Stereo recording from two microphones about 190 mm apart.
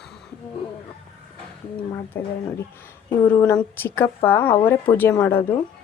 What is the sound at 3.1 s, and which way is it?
Speech, 15° left (ahead or behind).